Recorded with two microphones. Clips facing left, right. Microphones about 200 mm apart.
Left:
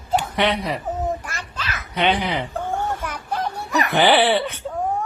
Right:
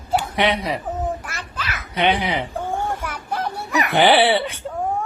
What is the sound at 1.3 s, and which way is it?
Babbling, 10° right (ahead or behind).